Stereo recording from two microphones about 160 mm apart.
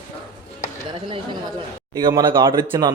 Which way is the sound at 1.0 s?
30° right (ahead or behind).